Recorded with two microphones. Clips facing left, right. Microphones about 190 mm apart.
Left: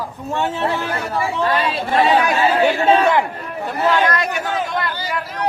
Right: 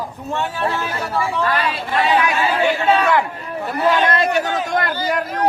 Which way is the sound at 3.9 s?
25° right (ahead or behind).